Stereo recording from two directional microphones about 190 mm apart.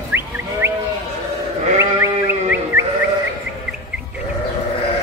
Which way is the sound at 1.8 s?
15° right (ahead or behind).